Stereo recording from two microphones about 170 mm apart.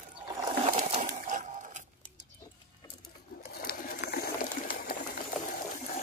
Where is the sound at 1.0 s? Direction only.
50° right (ahead or behind).